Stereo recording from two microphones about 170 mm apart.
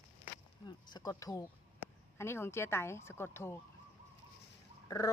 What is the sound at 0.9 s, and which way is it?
Speech, 20° left (ahead or behind).